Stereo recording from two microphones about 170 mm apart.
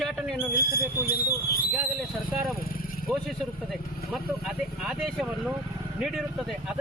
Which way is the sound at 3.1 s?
Centre (ahead or behind).